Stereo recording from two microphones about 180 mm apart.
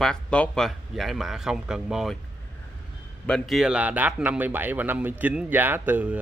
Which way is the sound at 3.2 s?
Centre (ahead or behind).